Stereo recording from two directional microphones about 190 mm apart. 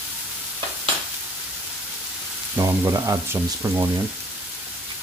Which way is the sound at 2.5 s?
15° right (ahead or behind).